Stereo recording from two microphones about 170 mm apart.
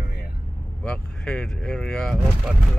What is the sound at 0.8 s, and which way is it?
Speech, 5° left (ahead or behind).